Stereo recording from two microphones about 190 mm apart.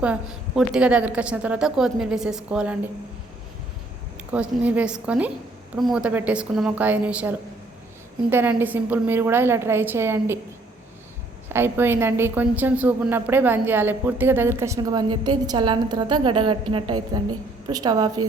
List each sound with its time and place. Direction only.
0.0 s a woman's voice: 5° right (ahead or behind)
4.3 s a woman's voice: 5° right (ahead or behind)
11.4 s a woman's voice: 10° right (ahead or behind)